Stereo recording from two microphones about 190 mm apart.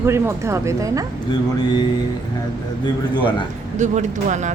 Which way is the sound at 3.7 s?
40° right (ahead or behind).